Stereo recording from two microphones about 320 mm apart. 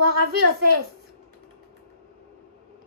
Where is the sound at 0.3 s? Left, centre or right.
Right.